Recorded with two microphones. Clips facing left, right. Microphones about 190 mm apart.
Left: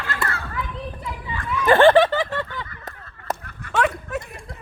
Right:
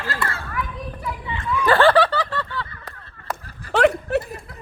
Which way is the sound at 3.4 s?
35° right (ahead or behind).